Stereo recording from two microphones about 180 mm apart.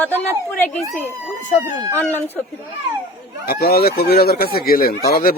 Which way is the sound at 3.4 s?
60° left (ahead or behind).